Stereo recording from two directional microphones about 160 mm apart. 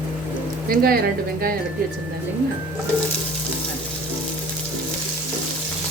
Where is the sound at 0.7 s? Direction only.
70° right (ahead or behind).